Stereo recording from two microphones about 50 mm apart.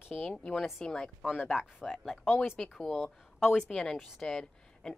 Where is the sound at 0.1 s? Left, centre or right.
Left.